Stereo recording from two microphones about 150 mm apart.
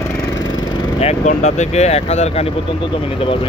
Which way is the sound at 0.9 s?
45° left (ahead or behind).